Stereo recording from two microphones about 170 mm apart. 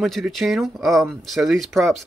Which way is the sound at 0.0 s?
Centre (ahead or behind).